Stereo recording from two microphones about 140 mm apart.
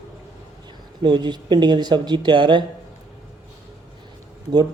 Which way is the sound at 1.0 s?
30° right (ahead or behind).